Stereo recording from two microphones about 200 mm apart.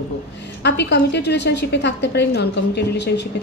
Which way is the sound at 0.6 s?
60° left (ahead or behind).